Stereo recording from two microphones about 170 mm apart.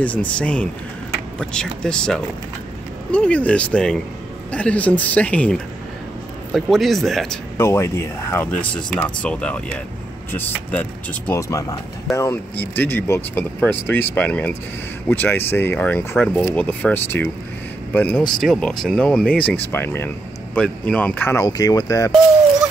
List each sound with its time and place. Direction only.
0.0 s speech: 10° left (ahead or behind)
7.5 s speech: 15° left (ahead or behind)